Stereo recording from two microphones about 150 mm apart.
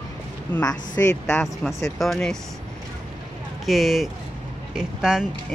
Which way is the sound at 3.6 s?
Centre (ahead or behind).